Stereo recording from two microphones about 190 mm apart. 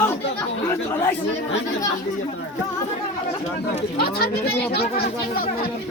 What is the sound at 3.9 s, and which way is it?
Speech, 55° left (ahead or behind).